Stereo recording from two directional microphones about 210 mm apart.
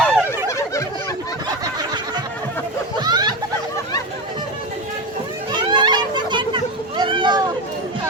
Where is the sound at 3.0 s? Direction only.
20° right (ahead or behind).